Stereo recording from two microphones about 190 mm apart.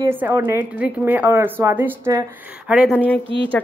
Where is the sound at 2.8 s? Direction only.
5° left (ahead or behind).